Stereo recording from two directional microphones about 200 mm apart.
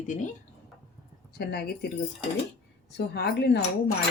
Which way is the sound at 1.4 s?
50° left (ahead or behind).